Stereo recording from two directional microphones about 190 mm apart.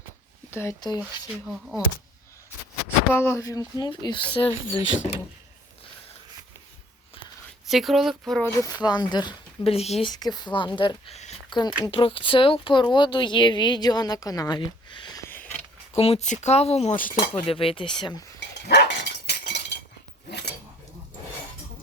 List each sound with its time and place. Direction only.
0.5 s speech: 15° left (ahead or behind)
1.3 s speech: 5° right (ahead or behind)
3.1 s speech: 10° left (ahead or behind)
4.8 s speech: 85° left
7.7 s speech: centre (ahead or behind)
8.6 s speech: 20° left (ahead or behind)
10.1 s speech: 20° left (ahead or behind)
16.0 s speech: 30° left (ahead or behind)
17.4 s speech: 30° left (ahead or behind)
18.3 s dog: 60° left (ahead or behind)